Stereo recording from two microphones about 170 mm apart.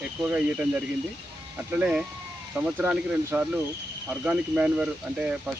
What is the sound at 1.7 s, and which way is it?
Speech, 5° right (ahead or behind).